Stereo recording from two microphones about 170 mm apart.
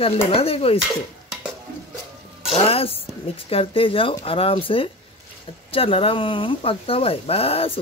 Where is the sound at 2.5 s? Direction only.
35° left (ahead or behind).